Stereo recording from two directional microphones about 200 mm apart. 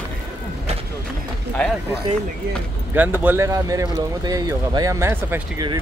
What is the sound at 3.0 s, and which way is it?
Speech, 10° right (ahead or behind).